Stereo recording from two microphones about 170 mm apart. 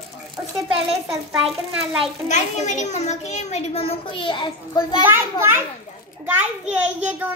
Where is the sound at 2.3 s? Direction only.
45° left (ahead or behind); by 4.9 s 25° left (ahead or behind).